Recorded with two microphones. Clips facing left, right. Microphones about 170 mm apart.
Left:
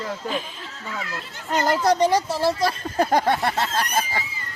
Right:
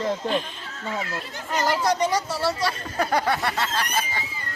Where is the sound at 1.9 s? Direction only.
35° left (ahead or behind).